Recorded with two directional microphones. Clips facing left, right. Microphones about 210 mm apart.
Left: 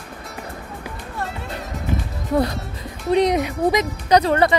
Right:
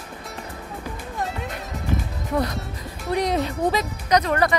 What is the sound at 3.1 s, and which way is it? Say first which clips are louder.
Speech: left 5 dB; 20° left (ahead or behind).